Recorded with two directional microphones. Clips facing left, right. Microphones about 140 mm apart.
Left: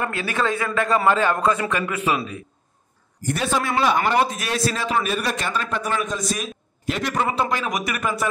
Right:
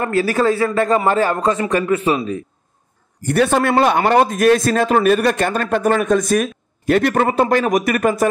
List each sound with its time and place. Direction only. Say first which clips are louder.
0.0 s a man's voice: right 8 dB; 40° right (ahead or behind)
3.3 s a man's voice: right 8 dB; 60° right (ahead or behind)